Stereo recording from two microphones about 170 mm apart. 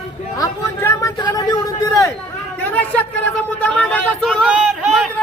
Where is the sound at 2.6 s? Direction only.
10° left (ahead or behind).